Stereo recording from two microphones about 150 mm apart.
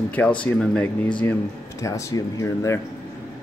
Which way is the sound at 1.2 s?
20° left (ahead or behind).